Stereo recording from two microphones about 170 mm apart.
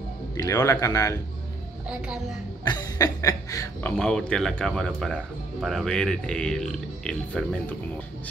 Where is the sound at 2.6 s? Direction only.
20° left (ahead or behind).